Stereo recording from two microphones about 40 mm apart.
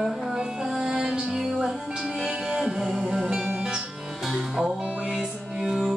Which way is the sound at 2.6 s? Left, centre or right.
Centre.